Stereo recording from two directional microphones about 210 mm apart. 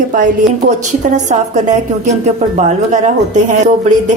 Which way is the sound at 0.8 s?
35° right (ahead or behind).